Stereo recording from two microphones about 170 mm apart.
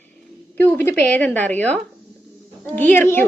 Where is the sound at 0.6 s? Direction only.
10° left (ahead or behind).